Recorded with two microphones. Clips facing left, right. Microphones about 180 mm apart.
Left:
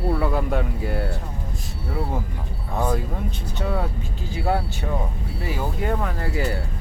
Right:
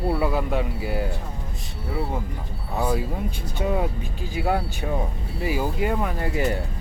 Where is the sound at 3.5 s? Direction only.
15° right (ahead or behind).